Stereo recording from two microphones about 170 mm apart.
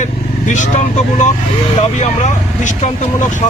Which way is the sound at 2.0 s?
45° left (ahead or behind).